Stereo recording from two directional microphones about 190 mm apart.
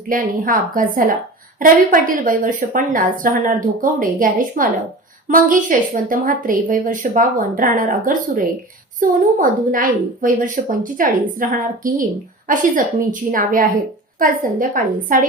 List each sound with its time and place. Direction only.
0.1 s a woman's voice: 45° right (ahead or behind)